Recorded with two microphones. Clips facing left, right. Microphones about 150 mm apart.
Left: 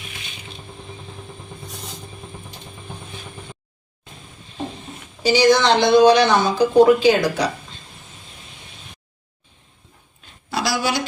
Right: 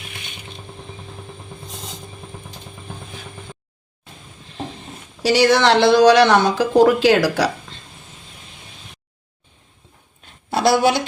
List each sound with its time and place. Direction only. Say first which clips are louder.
5.2 s speech: even; 75° right (ahead or behind)
10.5 s a woman's voice: right 6 dB; 55° right (ahead or behind)